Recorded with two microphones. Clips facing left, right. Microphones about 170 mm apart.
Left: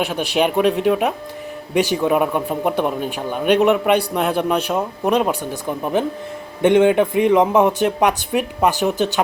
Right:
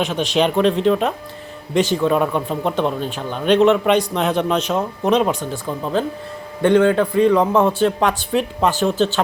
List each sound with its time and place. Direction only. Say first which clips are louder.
0.0 s speech: right 1 dB; 10° left (ahead or behind)